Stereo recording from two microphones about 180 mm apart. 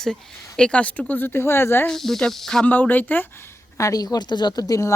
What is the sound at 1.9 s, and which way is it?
A woman's voice, centre (ahead or behind).